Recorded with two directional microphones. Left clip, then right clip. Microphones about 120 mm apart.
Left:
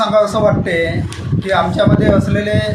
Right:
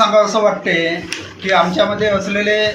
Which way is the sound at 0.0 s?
20° left (ahead or behind).